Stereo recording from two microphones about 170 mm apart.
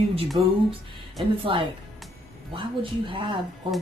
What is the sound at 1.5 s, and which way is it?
A woman's voice, 30° right (ahead or behind).